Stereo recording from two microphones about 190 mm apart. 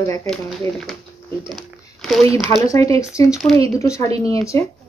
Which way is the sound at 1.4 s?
Centre (ahead or behind).